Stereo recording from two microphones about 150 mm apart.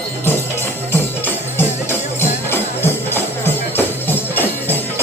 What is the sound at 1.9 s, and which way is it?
Music, 15° left (ahead or behind).